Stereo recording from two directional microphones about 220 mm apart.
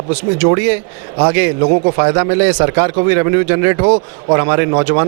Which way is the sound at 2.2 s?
10° right (ahead or behind).